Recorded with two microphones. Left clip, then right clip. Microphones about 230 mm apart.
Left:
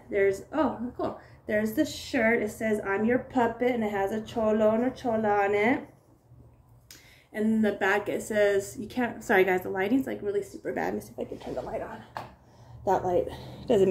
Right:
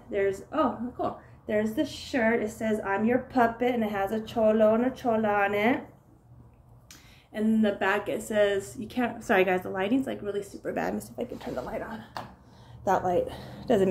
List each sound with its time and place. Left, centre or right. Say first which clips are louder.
0.1 s speech: left 2 dB; centre
6.9 s speech: even; centre
11.5 s speech: left 2 dB; right
12.8 s a woman's voice: even; centre